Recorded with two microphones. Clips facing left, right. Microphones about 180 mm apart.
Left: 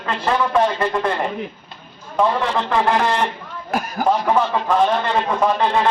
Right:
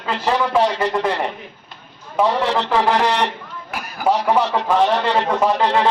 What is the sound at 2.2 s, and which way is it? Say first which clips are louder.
Speech: even; 5° right (ahead or behind).